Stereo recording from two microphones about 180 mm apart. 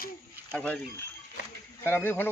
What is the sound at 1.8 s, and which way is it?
Speech, 10° left (ahead or behind).